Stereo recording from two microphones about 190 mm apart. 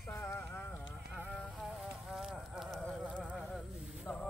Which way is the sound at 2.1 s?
Centre (ahead or behind).